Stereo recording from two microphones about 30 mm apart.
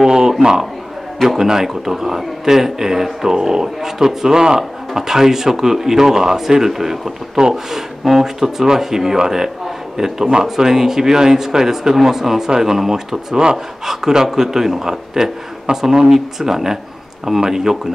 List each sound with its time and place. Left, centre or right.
0.0 s a man's voice: centre